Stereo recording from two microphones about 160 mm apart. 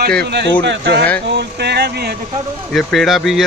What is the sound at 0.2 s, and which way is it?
Speech, 90° right.